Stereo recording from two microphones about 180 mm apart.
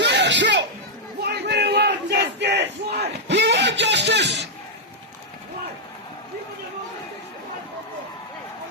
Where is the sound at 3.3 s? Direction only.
70° right (ahead or behind).